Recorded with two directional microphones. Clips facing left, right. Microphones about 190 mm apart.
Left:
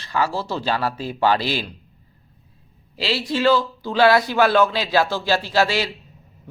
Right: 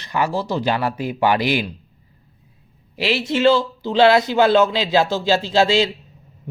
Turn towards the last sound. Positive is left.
turn(degrees=-20)  # may be behind; listen again after turning